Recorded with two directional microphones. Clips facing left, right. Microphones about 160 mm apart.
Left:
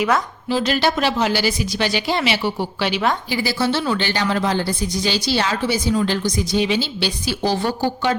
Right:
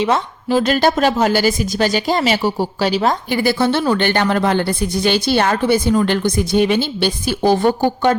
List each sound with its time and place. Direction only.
0.5 s speech: 50° right (ahead or behind)
3.3 s a woman's voice: 55° right (ahead or behind)